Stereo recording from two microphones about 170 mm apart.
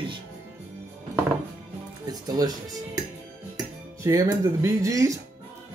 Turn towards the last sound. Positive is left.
turn(degrees=-20)  # may be behind; listen again after turning